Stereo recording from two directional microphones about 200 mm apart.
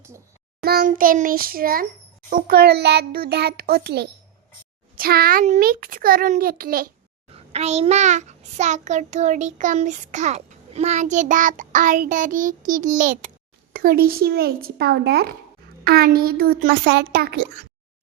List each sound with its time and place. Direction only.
0.6 s a child's voice: 50° right (ahead or behind)
7.3 s child singing: 30° right (ahead or behind)
13.7 s a child's voice: 45° right (ahead or behind)